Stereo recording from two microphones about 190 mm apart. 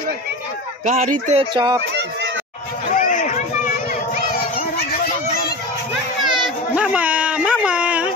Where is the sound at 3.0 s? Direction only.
40° left (ahead or behind).